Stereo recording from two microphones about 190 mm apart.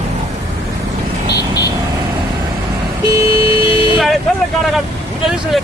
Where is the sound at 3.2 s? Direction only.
30° left (ahead or behind).